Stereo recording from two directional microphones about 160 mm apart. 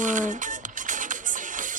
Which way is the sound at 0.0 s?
55° right (ahead or behind).